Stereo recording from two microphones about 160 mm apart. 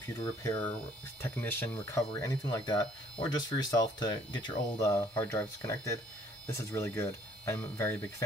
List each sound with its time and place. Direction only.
0.4 s speech: 20° left (ahead or behind)